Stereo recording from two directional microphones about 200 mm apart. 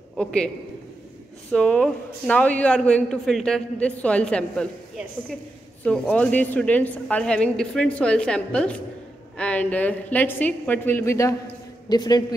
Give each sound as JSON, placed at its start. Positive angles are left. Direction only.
{"t": 0.2, "sound": "a man's voice", "side_deg": 5}
{"t": 1.5, "sound": "a man's voice", "side_deg": 5}